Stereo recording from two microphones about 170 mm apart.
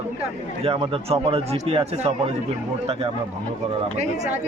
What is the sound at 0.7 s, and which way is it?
A man's voice, 35° right (ahead or behind).